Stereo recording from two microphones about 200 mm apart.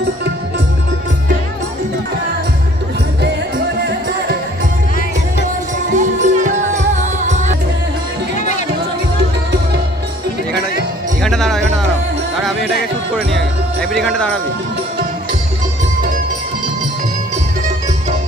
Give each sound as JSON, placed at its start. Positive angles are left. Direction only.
{"t": 5.9, "sound": "music", "side_deg": -40}
{"t": 8.4, "sound": "music", "side_deg": 35}
{"t": 11.2, "sound": "music", "side_deg": 0}
{"t": 13.1, "sound": "music", "side_deg": 5}